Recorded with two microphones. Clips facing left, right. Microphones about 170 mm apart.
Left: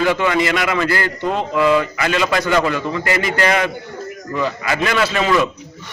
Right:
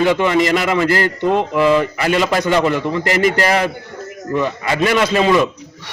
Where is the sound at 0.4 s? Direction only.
35° right (ahead or behind).